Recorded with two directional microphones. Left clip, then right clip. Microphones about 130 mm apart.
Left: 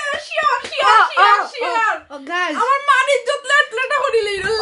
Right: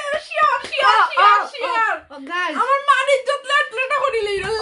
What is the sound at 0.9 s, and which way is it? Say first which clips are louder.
Speech: left 3 dB; 30° left (ahead or behind).